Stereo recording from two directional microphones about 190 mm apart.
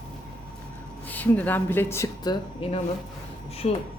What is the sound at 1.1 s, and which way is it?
A man's voice, 10° left (ahead or behind).